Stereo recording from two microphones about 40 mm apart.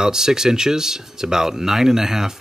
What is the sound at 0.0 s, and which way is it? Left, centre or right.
Speech, centre.